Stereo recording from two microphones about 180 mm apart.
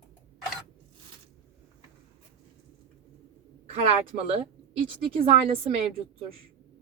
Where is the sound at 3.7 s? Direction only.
35° right (ahead or behind).